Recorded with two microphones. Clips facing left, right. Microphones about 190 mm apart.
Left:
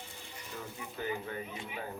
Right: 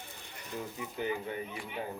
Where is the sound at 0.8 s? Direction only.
20° right (ahead or behind).